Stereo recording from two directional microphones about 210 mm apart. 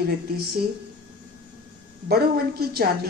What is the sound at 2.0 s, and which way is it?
Speech, 50° right (ahead or behind).